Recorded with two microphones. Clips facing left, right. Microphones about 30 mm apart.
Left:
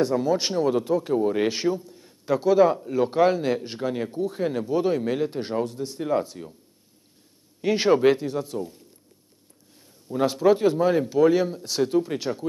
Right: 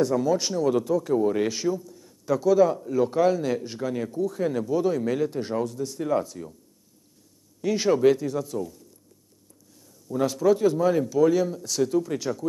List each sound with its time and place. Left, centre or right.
0.0 s speech: left
1.1 s a man's voice: left
7.6 s speech: left
9.8 s speech: left